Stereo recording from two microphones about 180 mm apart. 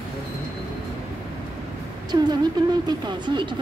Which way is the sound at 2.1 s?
25° right (ahead or behind).